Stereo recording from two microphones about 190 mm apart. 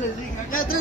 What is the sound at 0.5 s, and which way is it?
Speech, 50° left (ahead or behind).